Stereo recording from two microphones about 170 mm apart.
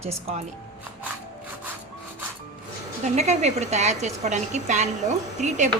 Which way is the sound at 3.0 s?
40° right (ahead or behind).